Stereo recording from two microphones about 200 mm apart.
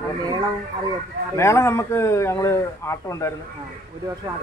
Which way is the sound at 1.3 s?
15° left (ahead or behind).